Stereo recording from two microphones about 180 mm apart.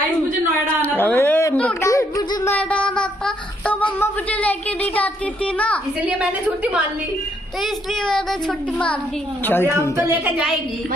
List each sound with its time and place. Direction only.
0.9 s a sound: 10° left (ahead or behind)
4.9 s speech: 10° left (ahead or behind)
6.0 s a woman's voice: 5° right (ahead or behind); by 9.7 s 10° left (ahead or behind)
9.9 s a woman's voice: 10° right (ahead or behind)